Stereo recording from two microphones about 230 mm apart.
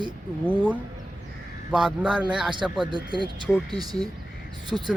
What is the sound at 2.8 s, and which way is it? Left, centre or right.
Speech, centre.